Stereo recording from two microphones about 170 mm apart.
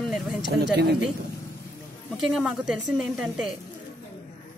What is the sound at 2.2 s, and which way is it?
A woman's voice, centre (ahead or behind).